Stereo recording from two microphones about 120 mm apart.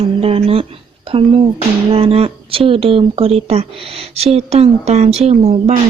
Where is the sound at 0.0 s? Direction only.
55° right (ahead or behind).